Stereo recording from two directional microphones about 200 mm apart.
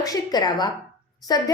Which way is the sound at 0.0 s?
20° left (ahead or behind).